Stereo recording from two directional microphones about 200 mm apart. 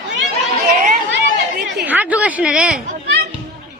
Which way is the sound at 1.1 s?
60° right (ahead or behind).